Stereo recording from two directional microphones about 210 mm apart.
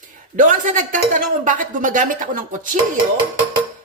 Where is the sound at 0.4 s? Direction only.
35° right (ahead or behind).